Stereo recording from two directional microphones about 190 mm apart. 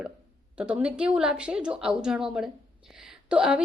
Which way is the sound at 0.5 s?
5° right (ahead or behind).